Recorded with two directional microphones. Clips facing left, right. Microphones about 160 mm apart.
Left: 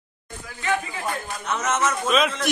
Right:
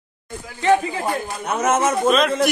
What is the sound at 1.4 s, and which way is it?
Speech, 55° right (ahead or behind).